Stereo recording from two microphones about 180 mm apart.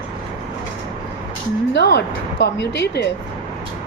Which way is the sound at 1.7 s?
70° left (ahead or behind).